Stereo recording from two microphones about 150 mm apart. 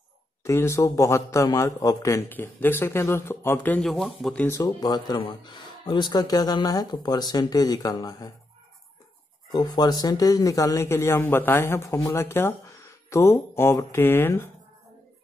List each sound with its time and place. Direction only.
0.4 s a man's voice: 20° left (ahead or behind)
4.5 s speech: 20° left (ahead or behind)
9.5 s a man's voice: 25° left (ahead or behind)